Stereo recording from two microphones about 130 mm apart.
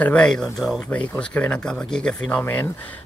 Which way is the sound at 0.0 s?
5° left (ahead or behind).